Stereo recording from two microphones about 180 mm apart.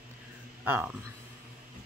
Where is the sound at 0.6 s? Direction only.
10° right (ahead or behind).